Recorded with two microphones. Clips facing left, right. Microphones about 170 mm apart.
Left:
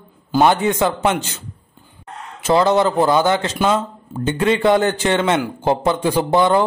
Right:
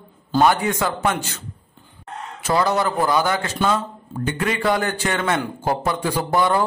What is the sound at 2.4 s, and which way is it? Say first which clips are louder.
Speech: left 5 dB; 20° left (ahead or behind).